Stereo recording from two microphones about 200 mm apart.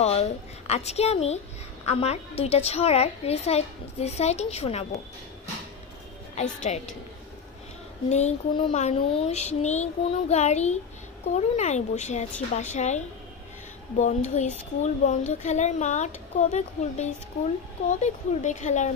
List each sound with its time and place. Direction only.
0.0 s speech: 30° left (ahead or behind)
6.3 s a woman's voice: 35° left (ahead or behind)
8.1 s speech: 35° left (ahead or behind)